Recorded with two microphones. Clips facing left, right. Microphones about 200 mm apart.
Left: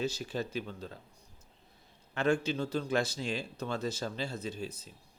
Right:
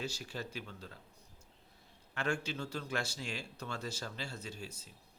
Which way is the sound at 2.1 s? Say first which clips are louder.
Left 8 dB; 20° left (ahead or behind).